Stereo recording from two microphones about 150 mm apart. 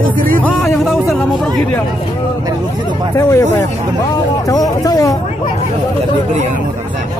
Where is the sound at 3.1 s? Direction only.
20° left (ahead or behind).